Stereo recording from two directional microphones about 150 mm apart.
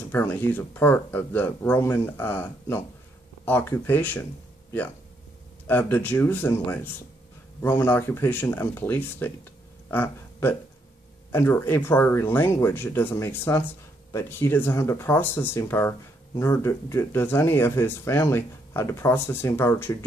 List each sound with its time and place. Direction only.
0.1 s speech: 15° left (ahead or behind)
5.7 s speech: 15° left (ahead or behind)
9.8 s a sound: 15° left (ahead or behind)
11.3 s speech: 15° left (ahead or behind)